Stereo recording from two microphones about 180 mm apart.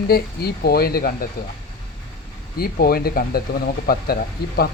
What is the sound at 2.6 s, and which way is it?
Speech, 55° left (ahead or behind).